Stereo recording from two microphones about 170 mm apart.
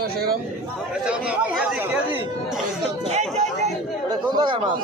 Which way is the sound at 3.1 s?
40° right (ahead or behind).